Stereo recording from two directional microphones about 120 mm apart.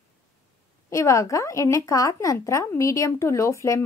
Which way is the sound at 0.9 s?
25° left (ahead or behind).